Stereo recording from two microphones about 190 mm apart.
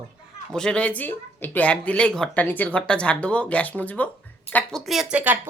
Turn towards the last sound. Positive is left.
turn(degrees=-5)  # may be behind; listen again after turning